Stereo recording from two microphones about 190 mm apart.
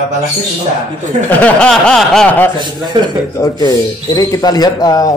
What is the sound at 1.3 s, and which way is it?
Speech, 5° left (ahead or behind).